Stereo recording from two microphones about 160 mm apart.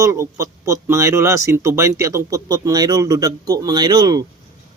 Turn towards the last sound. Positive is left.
turn(degrees=-25)  # may be behind; listen again after turning